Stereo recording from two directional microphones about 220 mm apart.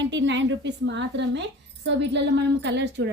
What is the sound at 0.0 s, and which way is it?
A woman's voice, 55° right (ahead or behind).